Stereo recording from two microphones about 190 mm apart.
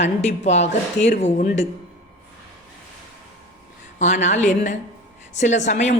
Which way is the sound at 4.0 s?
40° left (ahead or behind).